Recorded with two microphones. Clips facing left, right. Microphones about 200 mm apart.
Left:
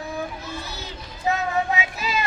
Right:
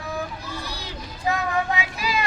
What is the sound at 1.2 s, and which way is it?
Vehicle, 25° left (ahead or behind).